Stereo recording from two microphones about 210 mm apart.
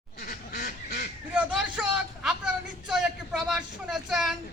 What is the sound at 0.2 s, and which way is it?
Goose, 35° left (ahead or behind).